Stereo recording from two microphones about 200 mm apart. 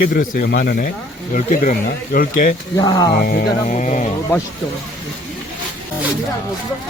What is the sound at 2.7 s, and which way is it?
Speech, 20° left (ahead or behind).